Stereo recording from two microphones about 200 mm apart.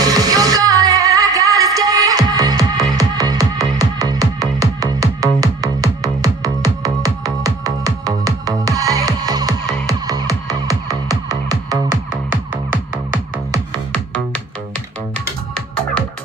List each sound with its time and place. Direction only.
0.0 s music: 20° right (ahead or behind)
13.9 s music: 5° left (ahead or behind)